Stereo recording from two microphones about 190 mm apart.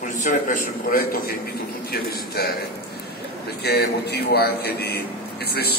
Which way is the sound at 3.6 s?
55° left (ahead or behind).